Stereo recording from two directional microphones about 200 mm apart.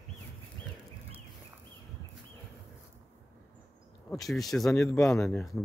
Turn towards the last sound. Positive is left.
turn(degrees=0)  # may be behind; listen again after turning